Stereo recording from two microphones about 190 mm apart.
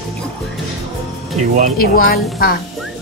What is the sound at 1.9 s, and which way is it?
Speech, 50° left (ahead or behind).